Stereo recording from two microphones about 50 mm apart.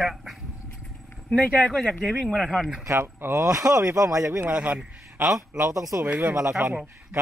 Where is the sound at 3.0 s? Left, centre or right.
Right.